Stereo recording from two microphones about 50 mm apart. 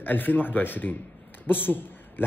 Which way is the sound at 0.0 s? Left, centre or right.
Left.